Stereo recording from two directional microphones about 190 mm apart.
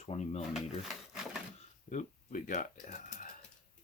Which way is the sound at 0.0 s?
30° left (ahead or behind).